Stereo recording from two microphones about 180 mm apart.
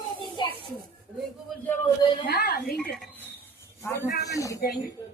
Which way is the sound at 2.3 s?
60° left (ahead or behind).